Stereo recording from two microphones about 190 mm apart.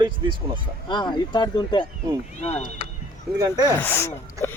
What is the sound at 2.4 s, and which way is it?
Speech, 35° left (ahead or behind).